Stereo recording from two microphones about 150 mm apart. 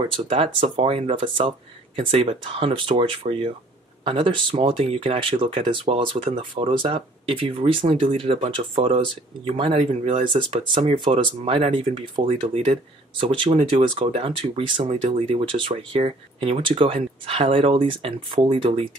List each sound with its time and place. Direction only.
0.3 s speech: 35° right (ahead or behind)